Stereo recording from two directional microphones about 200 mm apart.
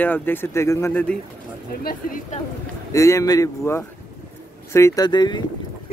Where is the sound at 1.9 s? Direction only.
40° left (ahead or behind).